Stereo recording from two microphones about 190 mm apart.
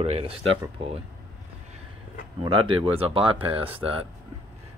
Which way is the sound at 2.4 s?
25° right (ahead or behind).